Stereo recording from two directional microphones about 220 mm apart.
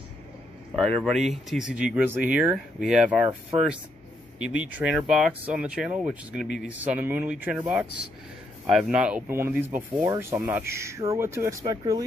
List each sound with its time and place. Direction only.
0.7 s speech: 5° left (ahead or behind)
4.5 s speech: 5° right (ahead or behind)
6.4 s speech: 50° left (ahead or behind)
6.8 s speech: 10° right (ahead or behind)